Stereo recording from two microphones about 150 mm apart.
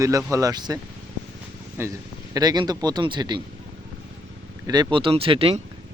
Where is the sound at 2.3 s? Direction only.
25° right (ahead or behind).